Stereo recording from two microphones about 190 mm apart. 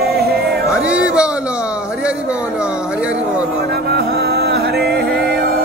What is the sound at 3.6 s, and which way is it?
Music, 55° right (ahead or behind).